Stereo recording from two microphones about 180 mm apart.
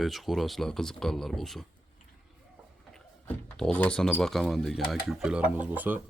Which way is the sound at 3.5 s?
5° left (ahead or behind).